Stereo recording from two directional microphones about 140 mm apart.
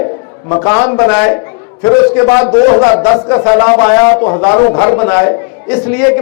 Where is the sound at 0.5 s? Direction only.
20° left (ahead or behind).